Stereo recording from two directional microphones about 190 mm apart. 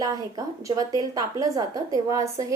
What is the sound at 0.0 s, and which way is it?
A woman's voice, 20° right (ahead or behind).